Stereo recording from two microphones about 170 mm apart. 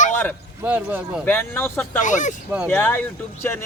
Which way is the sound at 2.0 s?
45° left (ahead or behind).